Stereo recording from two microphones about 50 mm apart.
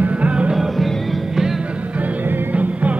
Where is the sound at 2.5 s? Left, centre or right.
Right.